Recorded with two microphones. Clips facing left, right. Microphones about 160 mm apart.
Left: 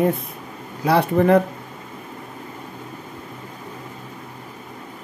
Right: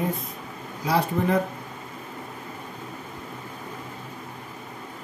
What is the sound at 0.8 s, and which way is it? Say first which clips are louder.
Speech: left 7 dB; 65° left (ahead or behind).